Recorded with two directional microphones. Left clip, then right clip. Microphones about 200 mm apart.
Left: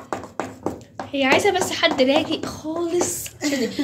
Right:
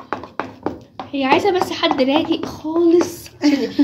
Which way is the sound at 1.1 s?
10° right (ahead or behind).